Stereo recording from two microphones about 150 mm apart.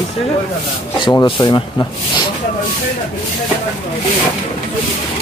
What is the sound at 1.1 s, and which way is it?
Speech, 30° left (ahead or behind).